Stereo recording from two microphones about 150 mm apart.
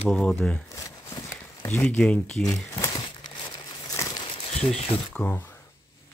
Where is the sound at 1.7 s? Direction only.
10° left (ahead or behind).